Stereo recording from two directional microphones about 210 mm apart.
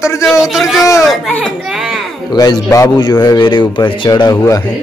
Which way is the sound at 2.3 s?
20° left (ahead or behind).